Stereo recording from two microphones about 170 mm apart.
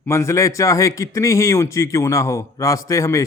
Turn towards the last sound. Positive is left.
turn(degrees=20)  # may be behind; listen again after turning